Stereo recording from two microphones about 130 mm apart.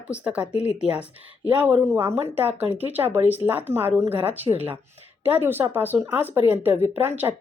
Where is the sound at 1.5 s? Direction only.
15° right (ahead or behind).